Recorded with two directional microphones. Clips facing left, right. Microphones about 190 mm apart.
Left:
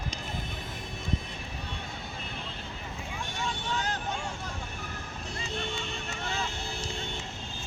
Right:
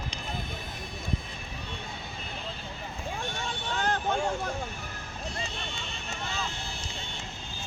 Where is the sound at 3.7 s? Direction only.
55° right (ahead or behind).